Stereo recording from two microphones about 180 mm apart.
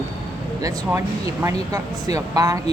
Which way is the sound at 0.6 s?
15° right (ahead or behind).